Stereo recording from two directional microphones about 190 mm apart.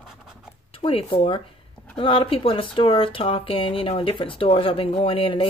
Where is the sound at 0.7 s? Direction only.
30° left (ahead or behind).